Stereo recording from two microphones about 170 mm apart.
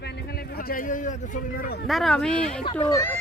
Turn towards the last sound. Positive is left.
turn(degrees=15)  # may be behind; listen again after turning